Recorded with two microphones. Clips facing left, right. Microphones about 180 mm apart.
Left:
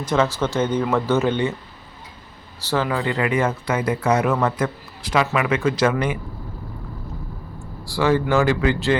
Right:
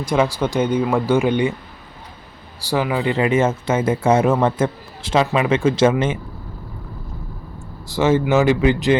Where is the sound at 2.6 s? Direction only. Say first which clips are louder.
Right 2 dB; 15° right (ahead or behind).